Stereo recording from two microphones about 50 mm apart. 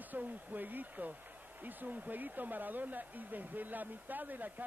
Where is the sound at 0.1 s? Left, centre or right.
Right.